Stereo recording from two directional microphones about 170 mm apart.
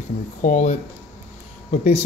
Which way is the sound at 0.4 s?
45° left (ahead or behind).